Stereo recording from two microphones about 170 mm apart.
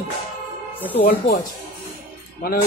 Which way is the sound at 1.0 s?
65° left (ahead or behind).